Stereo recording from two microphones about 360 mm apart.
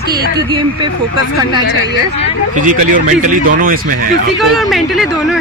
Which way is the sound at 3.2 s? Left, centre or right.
Right.